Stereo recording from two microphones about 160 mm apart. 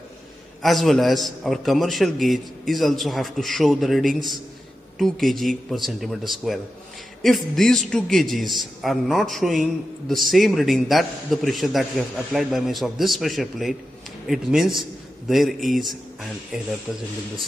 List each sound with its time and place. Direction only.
0.6 s a man's voice: centre (ahead or behind)